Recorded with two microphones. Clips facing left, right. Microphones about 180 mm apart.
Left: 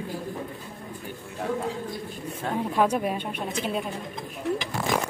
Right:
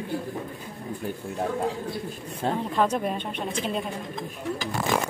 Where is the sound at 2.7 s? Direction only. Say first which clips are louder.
Left 3 dB; 10° left (ahead or behind).